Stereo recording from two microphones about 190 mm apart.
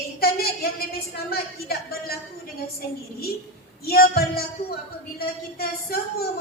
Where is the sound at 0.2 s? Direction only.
55° left (ahead or behind).